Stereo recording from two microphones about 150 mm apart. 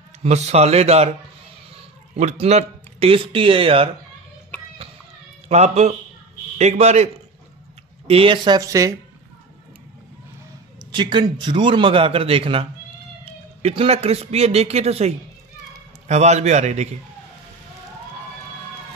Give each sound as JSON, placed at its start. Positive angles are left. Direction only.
{"t": 0.2, "sound": "a man's voice", "side_deg": -45}
{"t": 2.1, "sound": "speech", "side_deg": -45}
{"t": 5.5, "sound": "a man's voice", "side_deg": -45}
{"t": 8.1, "sound": "speech", "side_deg": -35}
{"t": 10.9, "sound": "a man's voice", "side_deg": -30}